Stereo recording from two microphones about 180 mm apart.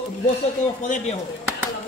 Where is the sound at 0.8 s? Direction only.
45° left (ahead or behind).